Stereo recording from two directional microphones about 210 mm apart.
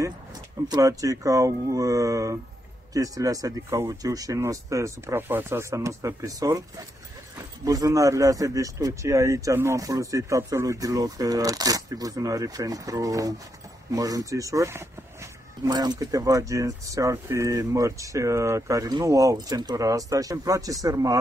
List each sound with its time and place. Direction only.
0.7 s speech: 15° right (ahead or behind)